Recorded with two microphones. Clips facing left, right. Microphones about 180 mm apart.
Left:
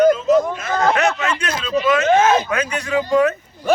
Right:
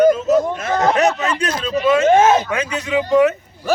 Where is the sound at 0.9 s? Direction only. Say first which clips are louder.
Right 2 dB; 35° right (ahead or behind); by 3.2 s 20° right (ahead or behind).